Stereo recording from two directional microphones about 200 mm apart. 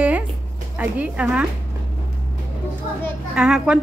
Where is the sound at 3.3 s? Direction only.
5° right (ahead or behind).